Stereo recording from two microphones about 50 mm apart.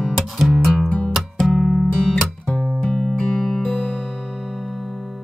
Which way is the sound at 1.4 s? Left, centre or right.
Centre.